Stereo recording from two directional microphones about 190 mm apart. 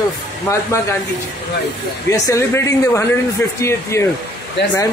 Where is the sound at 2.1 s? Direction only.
15° left (ahead or behind).